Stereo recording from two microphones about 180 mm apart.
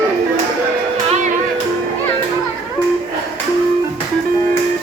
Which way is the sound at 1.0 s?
40° right (ahead or behind).